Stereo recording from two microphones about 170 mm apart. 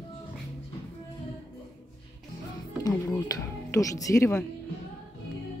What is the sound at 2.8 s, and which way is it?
Speech, 20° left (ahead or behind).